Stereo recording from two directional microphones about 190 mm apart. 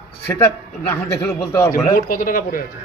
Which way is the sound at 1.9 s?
45° left (ahead or behind).